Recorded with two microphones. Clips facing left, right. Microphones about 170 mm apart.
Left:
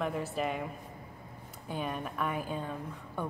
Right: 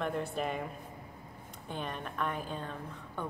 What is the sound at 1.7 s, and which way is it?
A woman's voice, 5° left (ahead or behind).